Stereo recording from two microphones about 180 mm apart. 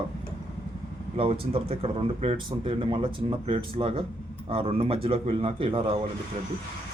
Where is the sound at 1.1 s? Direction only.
30° right (ahead or behind).